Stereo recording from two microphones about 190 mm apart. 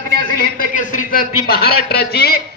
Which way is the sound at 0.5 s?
45° left (ahead or behind).